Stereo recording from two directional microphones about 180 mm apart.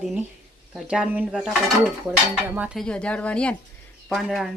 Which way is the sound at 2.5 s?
5° right (ahead or behind).